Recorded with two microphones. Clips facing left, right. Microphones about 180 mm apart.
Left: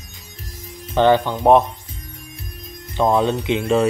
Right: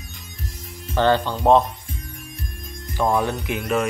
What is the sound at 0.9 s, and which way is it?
Speech, 15° left (ahead or behind).